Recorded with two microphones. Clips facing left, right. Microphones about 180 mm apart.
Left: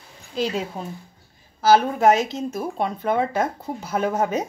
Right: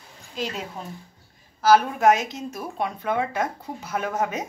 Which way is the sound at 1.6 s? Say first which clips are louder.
Left 1 dB; 30° left (ahead or behind).